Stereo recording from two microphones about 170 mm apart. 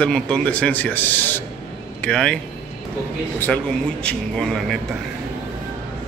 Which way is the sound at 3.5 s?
5° left (ahead or behind).